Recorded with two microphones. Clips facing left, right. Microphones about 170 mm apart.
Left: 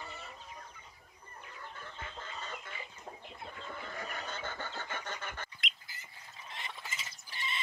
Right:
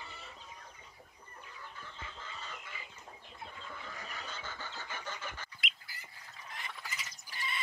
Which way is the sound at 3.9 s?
55° left (ahead or behind).